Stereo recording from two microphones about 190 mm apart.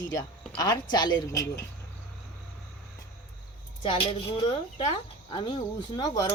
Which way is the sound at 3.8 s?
30° left (ahead or behind).